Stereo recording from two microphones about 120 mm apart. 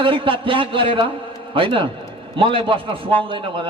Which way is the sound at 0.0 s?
45° right (ahead or behind).